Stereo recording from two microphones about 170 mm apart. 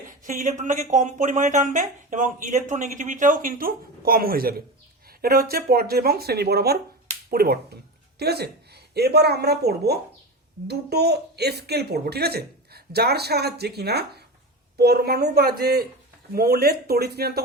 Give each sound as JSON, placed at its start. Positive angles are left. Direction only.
{"t": 0.3, "sound": "speech", "side_deg": -45}